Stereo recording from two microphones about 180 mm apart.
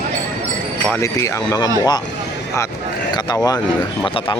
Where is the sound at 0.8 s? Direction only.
10° left (ahead or behind).